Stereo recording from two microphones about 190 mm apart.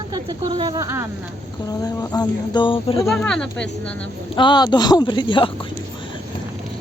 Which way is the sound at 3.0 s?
5° left (ahead or behind).